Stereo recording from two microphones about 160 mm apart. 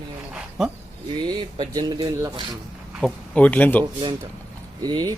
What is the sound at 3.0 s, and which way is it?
Speech, 10° left (ahead or behind).